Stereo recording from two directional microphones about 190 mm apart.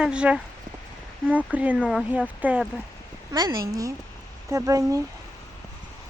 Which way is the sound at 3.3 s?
20° right (ahead or behind).